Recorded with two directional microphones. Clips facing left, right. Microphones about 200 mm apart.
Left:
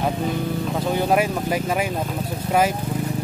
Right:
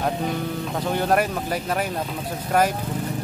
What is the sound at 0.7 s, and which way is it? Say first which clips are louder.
Speech: left 1 dB; 10° left (ahead or behind).